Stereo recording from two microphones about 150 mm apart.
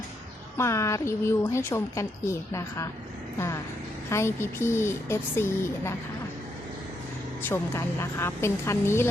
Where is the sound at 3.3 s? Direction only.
20° left (ahead or behind).